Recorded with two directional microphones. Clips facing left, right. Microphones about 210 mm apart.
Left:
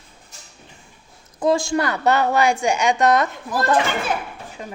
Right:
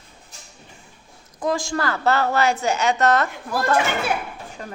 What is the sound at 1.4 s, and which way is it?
A woman's voice, 25° left (ahead or behind).